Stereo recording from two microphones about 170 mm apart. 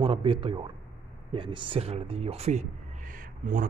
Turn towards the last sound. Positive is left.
turn(degrees=-50)  # may be behind; listen again after turning